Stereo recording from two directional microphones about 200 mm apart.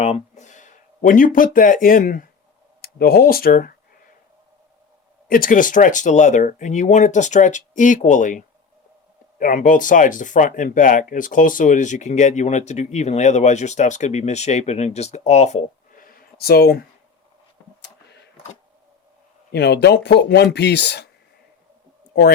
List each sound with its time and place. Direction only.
0.0 s speech: 35° left (ahead or behind)
5.3 s speech: 45° left (ahead or behind)
17.8 s a sound: 55° left (ahead or behind)
19.5 s speech: 55° left (ahead or behind)